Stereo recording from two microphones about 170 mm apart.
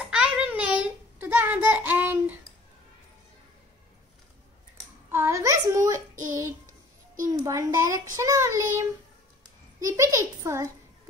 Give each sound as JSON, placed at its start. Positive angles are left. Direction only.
{"t": 0.0, "sound": "a sound", "side_deg": -5}
{"t": 5.1, "sound": "child singing", "side_deg": -15}
{"t": 9.8, "sound": "a child's voice", "side_deg": -20}